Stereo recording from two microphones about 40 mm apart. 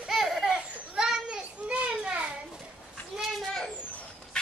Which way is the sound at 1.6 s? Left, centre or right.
Right.